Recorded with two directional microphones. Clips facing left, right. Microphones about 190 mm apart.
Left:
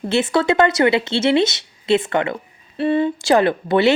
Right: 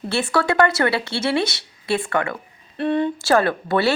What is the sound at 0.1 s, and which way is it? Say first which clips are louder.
A woman's voice: left 4 dB; 20° left (ahead or behind).